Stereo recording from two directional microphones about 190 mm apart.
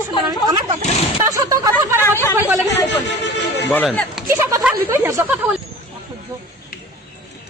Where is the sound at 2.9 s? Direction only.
65° left (ahead or behind).